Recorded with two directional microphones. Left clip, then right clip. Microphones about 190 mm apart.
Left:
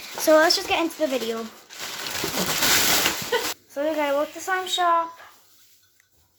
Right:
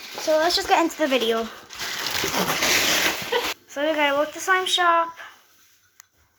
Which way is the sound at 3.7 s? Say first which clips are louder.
Right 2 dB; 20° right (ahead or behind).